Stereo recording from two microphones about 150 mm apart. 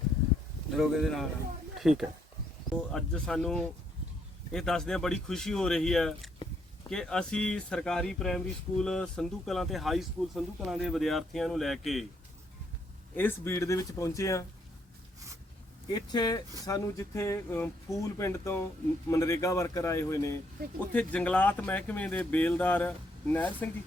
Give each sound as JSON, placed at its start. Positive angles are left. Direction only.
{"t": 0.7, "sound": "speech", "side_deg": 0}
{"t": 13.1, "sound": "speech", "side_deg": 15}
{"t": 15.9, "sound": "speech", "side_deg": 25}
{"t": 20.9, "sound": "speech", "side_deg": 10}